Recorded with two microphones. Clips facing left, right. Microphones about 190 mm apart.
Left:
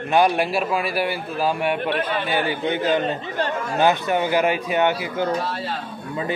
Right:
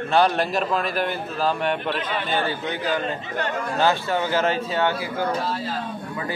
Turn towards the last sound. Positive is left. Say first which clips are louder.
# left 2 dB
turn(degrees=20)  # may be behind; listen again after turning